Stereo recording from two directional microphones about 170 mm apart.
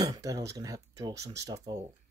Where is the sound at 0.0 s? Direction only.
20° right (ahead or behind).